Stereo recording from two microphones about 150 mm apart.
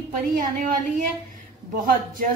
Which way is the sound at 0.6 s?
60° right (ahead or behind).